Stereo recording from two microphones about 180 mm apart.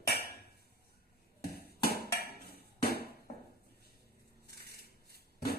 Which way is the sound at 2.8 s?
60° right (ahead or behind).